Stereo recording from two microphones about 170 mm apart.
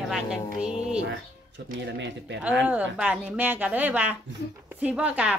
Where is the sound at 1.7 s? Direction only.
85° right.